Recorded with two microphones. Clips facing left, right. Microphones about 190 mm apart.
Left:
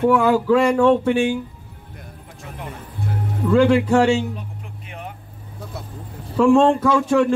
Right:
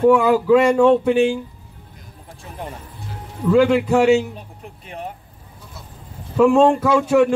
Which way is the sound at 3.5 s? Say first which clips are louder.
Even; 5° right (ahead or behind).